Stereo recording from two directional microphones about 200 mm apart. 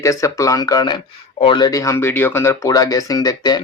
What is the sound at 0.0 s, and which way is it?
Speech, 15° left (ahead or behind).